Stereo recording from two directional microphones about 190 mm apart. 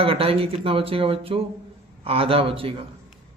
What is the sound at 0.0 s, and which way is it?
A man's voice, 30° right (ahead or behind).